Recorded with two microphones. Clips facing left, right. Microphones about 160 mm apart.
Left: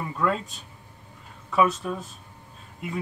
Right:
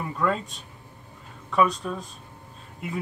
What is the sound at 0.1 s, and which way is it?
Speech, centre (ahead or behind).